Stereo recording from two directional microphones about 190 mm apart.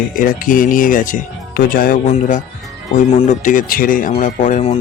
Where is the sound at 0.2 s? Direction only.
45° left (ahead or behind).